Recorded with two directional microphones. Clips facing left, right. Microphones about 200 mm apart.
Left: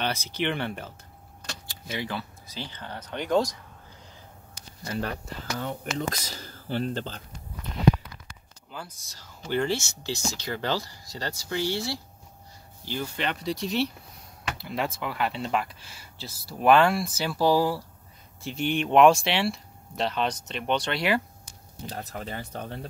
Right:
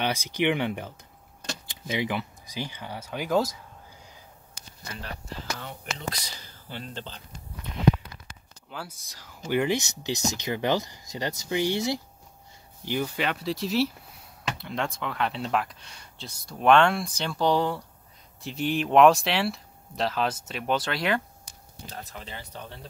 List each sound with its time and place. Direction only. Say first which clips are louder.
0.0 s speech: right 3 dB; 15° right (ahead or behind)
5.6 s speech: left 7 dB; 45° left (ahead or behind)
9.4 s speech: right 2 dB; 10° right (ahead or behind)
21.8 s speech: left 5 dB; 45° left (ahead or behind)